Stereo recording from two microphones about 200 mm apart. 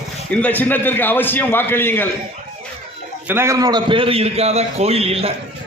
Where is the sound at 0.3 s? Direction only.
10° left (ahead or behind).